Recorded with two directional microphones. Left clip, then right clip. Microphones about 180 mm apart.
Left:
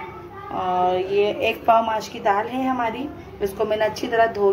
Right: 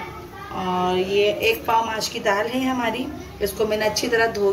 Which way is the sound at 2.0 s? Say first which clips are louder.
Even; 30° left (ahead or behind).